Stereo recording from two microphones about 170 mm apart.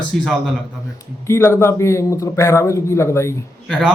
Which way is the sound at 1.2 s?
15° left (ahead or behind).